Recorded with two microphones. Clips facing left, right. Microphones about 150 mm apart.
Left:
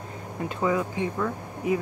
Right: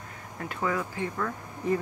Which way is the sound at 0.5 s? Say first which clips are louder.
Left 4 dB; 20° left (ahead or behind).